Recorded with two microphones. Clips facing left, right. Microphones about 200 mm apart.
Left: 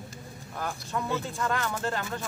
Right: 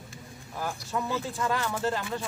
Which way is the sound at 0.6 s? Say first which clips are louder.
Right 1 dB; 5° right (ahead or behind).